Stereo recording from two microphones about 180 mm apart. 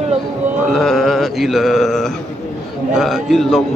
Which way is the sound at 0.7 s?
Centre (ahead or behind).